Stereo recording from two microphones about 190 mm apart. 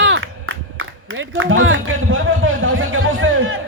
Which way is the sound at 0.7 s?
90° right.